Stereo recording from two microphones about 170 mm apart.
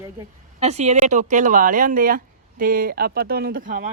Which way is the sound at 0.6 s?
40° right (ahead or behind).